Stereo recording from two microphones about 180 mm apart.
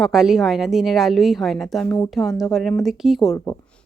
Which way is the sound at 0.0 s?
5° right (ahead or behind).